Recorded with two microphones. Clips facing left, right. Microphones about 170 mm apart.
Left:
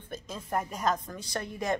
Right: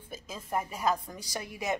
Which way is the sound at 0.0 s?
5° right (ahead or behind).